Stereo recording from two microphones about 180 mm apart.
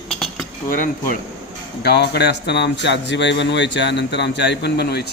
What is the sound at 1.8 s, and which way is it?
Speech, 65° left (ahead or behind).